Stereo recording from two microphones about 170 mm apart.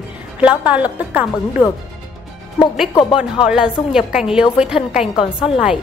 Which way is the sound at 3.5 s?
5° right (ahead or behind).